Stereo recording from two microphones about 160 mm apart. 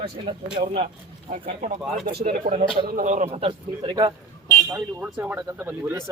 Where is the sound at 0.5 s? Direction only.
35° right (ahead or behind).